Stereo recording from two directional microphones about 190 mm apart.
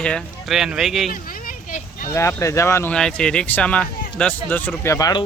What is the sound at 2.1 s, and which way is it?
Speech, 15° left (ahead or behind).